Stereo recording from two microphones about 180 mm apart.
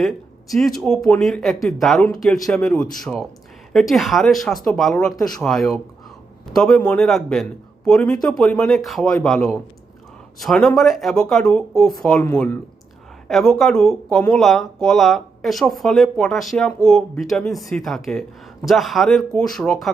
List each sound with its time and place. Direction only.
0.0 s speech: centre (ahead or behind)